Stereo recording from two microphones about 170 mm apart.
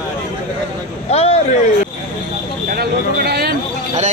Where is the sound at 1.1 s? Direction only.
40° left (ahead or behind).